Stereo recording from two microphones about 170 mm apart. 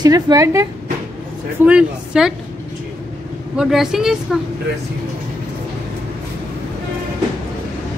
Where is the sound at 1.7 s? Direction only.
5° right (ahead or behind).